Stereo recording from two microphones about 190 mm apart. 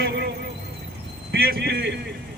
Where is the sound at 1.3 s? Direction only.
55° right (ahead or behind).